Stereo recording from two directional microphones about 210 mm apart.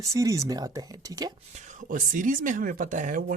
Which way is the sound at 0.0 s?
15° right (ahead or behind).